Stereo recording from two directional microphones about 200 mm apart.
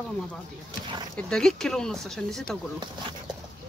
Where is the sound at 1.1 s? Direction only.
5° left (ahead or behind).